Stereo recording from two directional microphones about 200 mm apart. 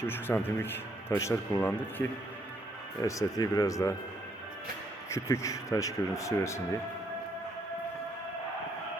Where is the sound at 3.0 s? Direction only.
15° left (ahead or behind).